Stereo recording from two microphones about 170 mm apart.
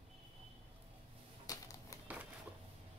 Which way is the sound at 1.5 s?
20° left (ahead or behind).